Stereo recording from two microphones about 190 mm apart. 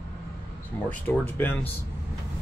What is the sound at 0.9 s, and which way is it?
Speech, 10° left (ahead or behind).